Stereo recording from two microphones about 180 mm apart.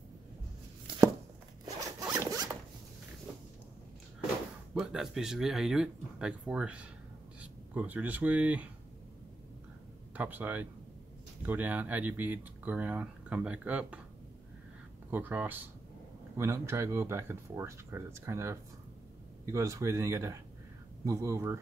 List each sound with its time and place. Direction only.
0.9 s chopping: 25° right (ahead or behind)
2.1 s zipper: 20° right (ahead or behind)
4.7 s speech: centre (ahead or behind)
10.1 s speech: 10° right (ahead or behind)
15.0 s speech: 10° right (ahead or behind)